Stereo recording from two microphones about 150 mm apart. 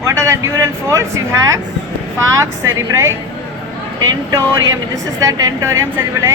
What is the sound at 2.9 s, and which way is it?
Speech, 20° right (ahead or behind).